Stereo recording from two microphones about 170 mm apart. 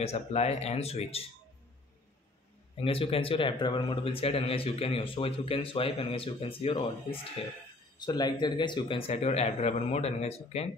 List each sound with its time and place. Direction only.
0.0 s speech: 40° left (ahead or behind)
2.8 s speech: 35° left (ahead or behind)